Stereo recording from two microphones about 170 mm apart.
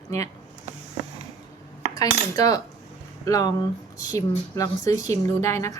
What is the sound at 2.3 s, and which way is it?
Speech, 20° left (ahead or behind).